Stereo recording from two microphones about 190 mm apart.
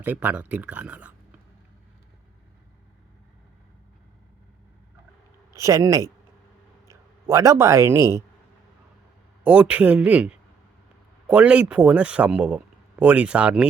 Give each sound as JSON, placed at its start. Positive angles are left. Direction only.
{"t": 0.0, "sound": "speech", "side_deg": -10}
{"t": 5.5, "sound": "speech", "side_deg": -15}
{"t": 9.4, "sound": "speech", "side_deg": -5}